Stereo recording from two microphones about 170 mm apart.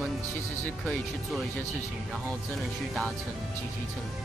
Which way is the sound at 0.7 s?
5° left (ahead or behind).